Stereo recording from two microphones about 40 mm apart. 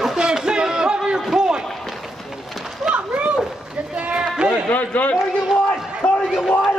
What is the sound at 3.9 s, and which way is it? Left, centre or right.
Run, right.